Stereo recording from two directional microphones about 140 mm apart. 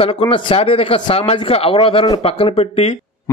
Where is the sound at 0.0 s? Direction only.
40° left (ahead or behind).